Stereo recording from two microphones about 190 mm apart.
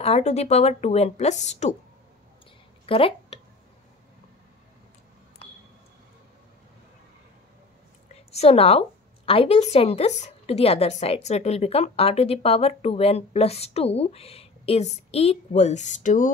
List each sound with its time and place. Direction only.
0.0 s a woman's voice: 35° left (ahead or behind)
2.9 s speech: 30° left (ahead or behind)
8.1 s a woman's voice: 35° left (ahead or behind)